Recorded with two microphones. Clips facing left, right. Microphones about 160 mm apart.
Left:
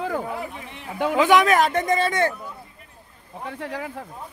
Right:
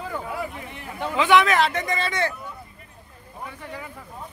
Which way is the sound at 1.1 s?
45° left (ahead or behind).